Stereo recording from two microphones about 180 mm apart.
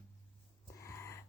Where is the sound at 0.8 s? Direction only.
15° left (ahead or behind).